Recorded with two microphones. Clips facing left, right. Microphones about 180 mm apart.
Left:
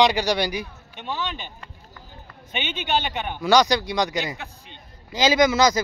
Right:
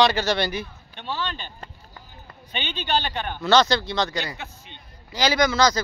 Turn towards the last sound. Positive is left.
turn(degrees=20)  # may be behind; listen again after turning